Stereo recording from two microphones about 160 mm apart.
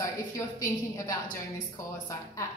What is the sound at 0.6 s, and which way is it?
A woman's voice, 20° left (ahead or behind).